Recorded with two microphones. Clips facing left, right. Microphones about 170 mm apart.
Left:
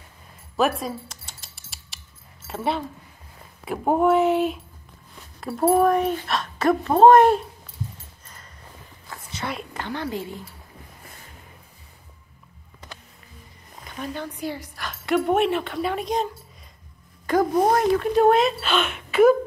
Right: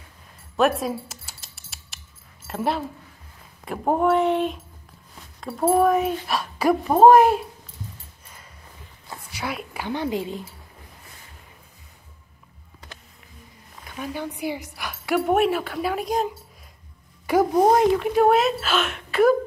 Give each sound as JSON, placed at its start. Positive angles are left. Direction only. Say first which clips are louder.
{"t": 0.6, "sound": "mouse", "louder": "right 2 dB", "side_deg": 0}
{"t": 2.4, "sound": "a woman's voice", "louder": "right 1 dB", "side_deg": 0}
{"t": 9.1, "sound": "a sound", "louder": "even", "side_deg": -10}
{"t": 9.8, "sound": "a woman's voice", "louder": "right 4 dB", "side_deg": -15}
{"t": 13.9, "sound": "a woman's voice", "louder": "right 1 dB", "side_deg": -10}
{"t": 17.3, "sound": "a woman's voice", "louder": "right 2 dB", "side_deg": -10}
{"t": 18.1, "sound": "speech", "louder": "left 1 dB", "side_deg": -5}